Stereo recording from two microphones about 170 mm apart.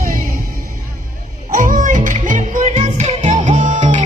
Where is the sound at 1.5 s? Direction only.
50° right (ahead or behind).